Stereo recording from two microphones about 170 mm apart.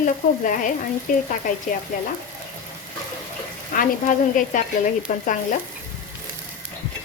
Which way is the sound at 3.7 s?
50° left (ahead or behind).